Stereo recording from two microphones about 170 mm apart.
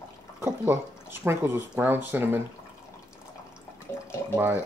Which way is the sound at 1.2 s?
15° right (ahead or behind).